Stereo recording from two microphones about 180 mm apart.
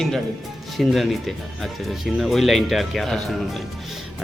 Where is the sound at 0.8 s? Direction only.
Centre (ahead or behind).